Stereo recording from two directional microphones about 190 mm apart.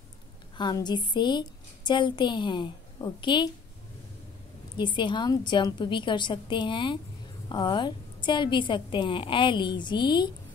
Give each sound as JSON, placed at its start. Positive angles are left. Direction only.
{"t": 0.6, "sound": "a woman's voice", "side_deg": 20}
{"t": 4.7, "sound": "a woman's voice", "side_deg": 25}